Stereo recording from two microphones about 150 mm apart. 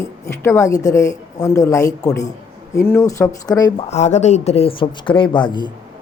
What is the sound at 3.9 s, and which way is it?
Speech, 50° left (ahead or behind).